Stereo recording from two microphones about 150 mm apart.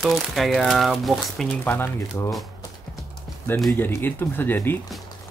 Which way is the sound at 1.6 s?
15° left (ahead or behind).